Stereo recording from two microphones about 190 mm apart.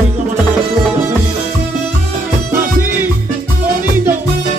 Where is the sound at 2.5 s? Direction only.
10° right (ahead or behind).